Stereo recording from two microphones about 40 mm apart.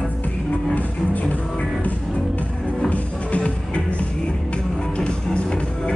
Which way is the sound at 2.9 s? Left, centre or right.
Left.